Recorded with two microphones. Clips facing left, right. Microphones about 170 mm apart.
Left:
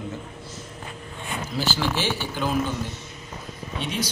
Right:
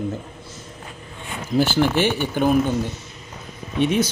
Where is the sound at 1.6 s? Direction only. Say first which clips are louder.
Right 9 dB; 55° right (ahead or behind).